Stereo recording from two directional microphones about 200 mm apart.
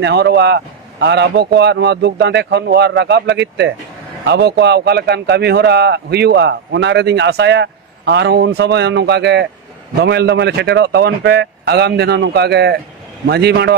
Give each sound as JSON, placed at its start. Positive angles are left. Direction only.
{"t": 0.0, "sound": "speech", "side_deg": -55}